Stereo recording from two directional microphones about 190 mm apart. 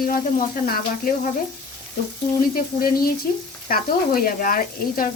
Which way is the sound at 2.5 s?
50° left (ahead or behind).